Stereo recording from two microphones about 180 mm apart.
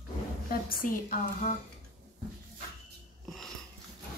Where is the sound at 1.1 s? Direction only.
40° left (ahead or behind).